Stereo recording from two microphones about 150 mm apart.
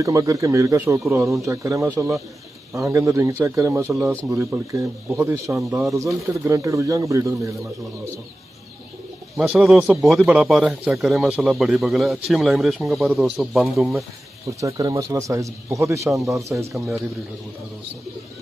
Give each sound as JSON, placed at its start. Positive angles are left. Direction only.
{"t": 0.0, "sound": "speech", "side_deg": -20}
{"t": 9.4, "sound": "a man's voice", "side_deg": 0}
{"t": 14.6, "sound": "speech", "side_deg": -25}